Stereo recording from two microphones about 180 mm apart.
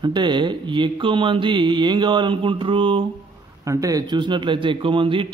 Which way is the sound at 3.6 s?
20° right (ahead or behind).